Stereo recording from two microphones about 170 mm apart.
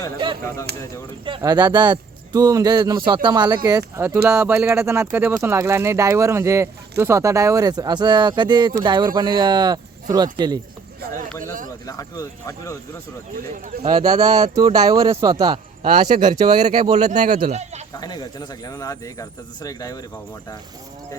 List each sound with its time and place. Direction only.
0.7 s speech: 70° right (ahead or behind)
1.4 s speech: 25° right (ahead or behind)
11.3 s speech: 10° left (ahead or behind)
13.8 s speech: 25° right (ahead or behind)
15.9 s speech: 50° right (ahead or behind)
18.0 s speech: 25° left (ahead or behind)